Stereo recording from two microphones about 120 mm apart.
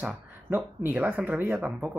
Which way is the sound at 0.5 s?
20° right (ahead or behind).